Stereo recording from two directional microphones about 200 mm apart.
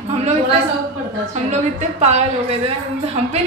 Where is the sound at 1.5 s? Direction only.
35° right (ahead or behind).